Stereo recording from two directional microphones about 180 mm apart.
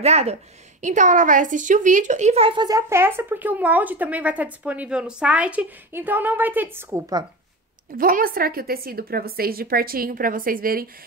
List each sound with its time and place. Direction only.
0.0 s a woman's voice: 35° right (ahead or behind); by 7.2 s 15° right (ahead or behind)
7.9 s a woman's voice: 50° right (ahead or behind)